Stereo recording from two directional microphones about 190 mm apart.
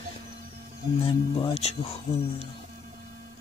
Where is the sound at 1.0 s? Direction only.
25° left (ahead or behind).